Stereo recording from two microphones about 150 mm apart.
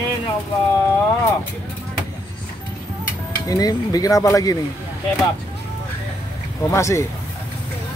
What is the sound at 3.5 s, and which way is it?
Speech, 25° left (ahead or behind).